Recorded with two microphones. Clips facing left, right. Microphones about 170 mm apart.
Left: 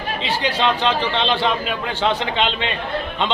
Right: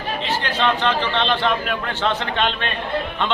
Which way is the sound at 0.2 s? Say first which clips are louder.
Left 2 dB; 10° left (ahead or behind).